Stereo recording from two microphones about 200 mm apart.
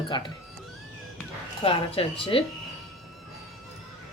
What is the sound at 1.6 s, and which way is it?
Speech, 25° left (ahead or behind).